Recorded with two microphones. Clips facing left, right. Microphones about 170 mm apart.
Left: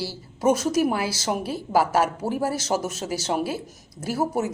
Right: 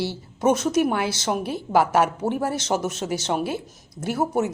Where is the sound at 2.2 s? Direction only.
25° right (ahead or behind).